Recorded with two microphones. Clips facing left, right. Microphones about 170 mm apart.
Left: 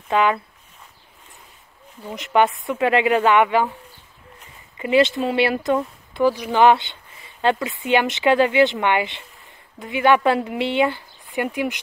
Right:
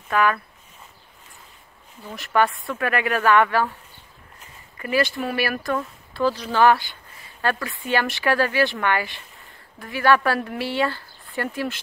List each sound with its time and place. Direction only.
0.1 s speech: 20° left (ahead or behind)
2.0 s speech: 20° left (ahead or behind)
4.7 s speech: 20° left (ahead or behind)